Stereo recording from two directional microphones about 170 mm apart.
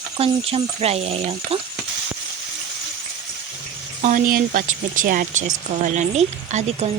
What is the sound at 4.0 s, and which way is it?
Speech, 50° right (ahead or behind).